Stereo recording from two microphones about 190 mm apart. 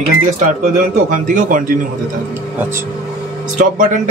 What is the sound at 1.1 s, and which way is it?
Speech, 40° right (ahead or behind).